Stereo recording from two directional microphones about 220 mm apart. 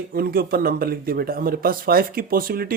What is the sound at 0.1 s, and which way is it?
Speech, 45° right (ahead or behind).